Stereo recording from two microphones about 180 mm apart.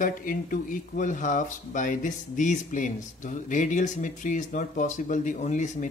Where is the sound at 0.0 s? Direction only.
50° left (ahead or behind).